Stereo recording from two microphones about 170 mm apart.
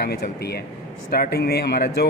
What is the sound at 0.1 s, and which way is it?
Speech, 65° left (ahead or behind).